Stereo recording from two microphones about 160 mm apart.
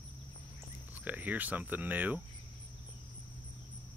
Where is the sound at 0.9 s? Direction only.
10° right (ahead or behind).